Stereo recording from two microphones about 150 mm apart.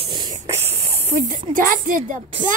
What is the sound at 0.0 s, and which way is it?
Spray, 30° right (ahead or behind).